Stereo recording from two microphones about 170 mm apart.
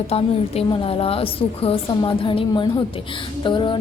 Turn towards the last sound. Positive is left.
turn(degrees=30)  # may be behind; listen again after turning